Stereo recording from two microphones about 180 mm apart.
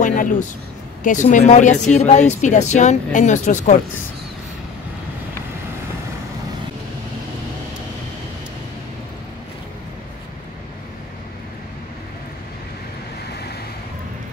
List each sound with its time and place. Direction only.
0.0 s speech: 45° left (ahead or behind)